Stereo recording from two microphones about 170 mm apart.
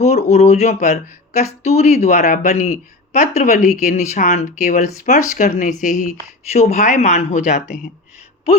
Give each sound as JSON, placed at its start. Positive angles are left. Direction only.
{"t": 0.0, "sound": "speech", "side_deg": 40}